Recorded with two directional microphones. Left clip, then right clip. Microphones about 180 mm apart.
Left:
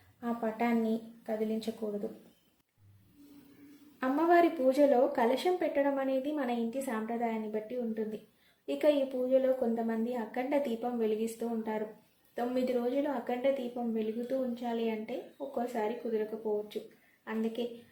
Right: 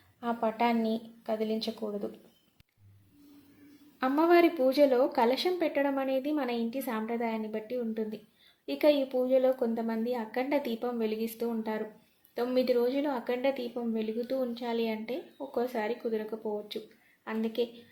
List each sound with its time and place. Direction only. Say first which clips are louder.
0.2 s a woman's voice: right 4 dB; 25° right (ahead or behind)
4.0 s a woman's voice: right 2 dB; 25° right (ahead or behind)
17.2 s a woman's voice: right 3 dB; 40° right (ahead or behind)